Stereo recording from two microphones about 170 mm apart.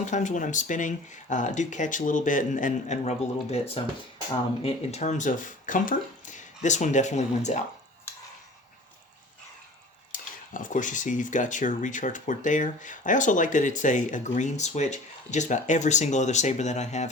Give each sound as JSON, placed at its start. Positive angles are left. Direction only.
{"t": 0.0, "sound": "speech", "side_deg": 45}
{"t": 10.1, "sound": "speech", "side_deg": 50}